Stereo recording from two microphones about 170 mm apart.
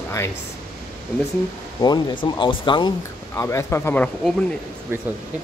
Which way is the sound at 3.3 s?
15° left (ahead or behind).